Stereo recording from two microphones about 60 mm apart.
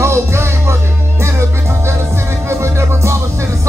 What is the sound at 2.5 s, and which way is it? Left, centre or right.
Music, right.